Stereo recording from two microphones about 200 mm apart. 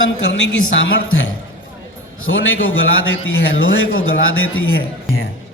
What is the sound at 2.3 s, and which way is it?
Speech, 65° left (ahead or behind).